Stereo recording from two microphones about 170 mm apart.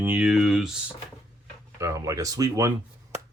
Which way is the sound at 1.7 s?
20° right (ahead or behind).